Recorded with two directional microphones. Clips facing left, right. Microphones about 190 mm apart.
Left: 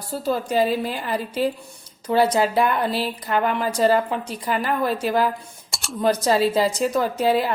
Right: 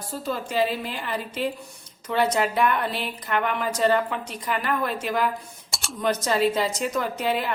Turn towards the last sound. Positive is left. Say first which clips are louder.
# left 6 dB
turn(degrees=35)  # may be behind; listen again after turning